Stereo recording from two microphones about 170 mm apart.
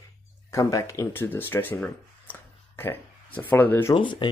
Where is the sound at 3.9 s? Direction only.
30° left (ahead or behind).